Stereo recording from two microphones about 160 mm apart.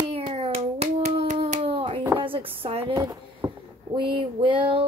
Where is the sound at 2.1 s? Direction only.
35° right (ahead or behind).